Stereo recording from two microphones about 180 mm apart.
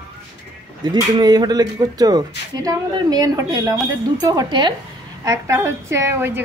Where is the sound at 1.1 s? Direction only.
20° right (ahead or behind).